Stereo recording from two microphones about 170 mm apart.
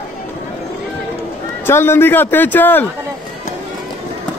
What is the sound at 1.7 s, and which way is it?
A man's voice, 15° left (ahead or behind).